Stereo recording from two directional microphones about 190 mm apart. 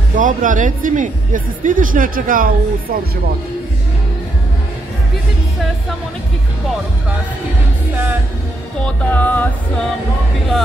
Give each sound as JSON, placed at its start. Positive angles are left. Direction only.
{"t": 0.1, "sound": "speech", "side_deg": -45}
{"t": 7.9, "sound": "music", "side_deg": -10}
{"t": 8.8, "sound": "music", "side_deg": 10}